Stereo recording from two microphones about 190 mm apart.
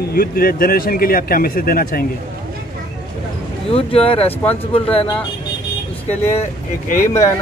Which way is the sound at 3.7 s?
30° left (ahead or behind).